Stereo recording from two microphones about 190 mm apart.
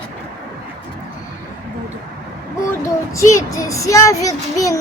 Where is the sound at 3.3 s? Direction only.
15° left (ahead or behind).